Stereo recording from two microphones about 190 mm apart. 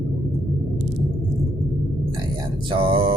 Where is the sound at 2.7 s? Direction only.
25° right (ahead or behind).